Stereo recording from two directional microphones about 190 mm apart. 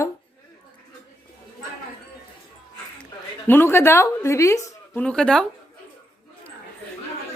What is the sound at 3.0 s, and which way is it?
A woman's voice, 10° left (ahead or behind).